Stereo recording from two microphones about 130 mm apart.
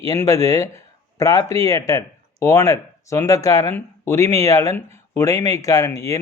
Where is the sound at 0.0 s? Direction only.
25° left (ahead or behind).